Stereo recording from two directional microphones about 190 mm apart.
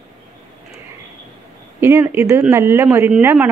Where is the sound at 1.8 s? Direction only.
10° right (ahead or behind).